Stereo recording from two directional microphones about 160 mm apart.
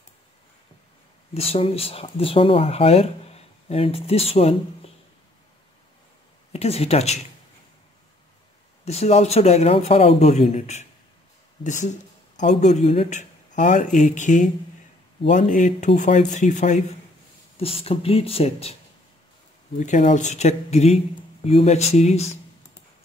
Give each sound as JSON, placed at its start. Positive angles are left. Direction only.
{"t": 1.3, "sound": "speech", "side_deg": 40}
{"t": 6.5, "sound": "speech", "side_deg": 40}
{"t": 8.8, "sound": "speech", "side_deg": 40}
{"t": 17.6, "sound": "speech", "side_deg": 35}
{"t": 19.8, "sound": "speech", "side_deg": 50}